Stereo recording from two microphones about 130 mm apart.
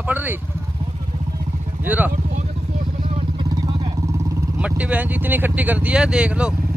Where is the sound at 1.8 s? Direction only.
15° right (ahead or behind).